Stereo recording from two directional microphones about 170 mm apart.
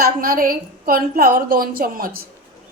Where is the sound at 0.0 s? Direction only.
55° right (ahead or behind).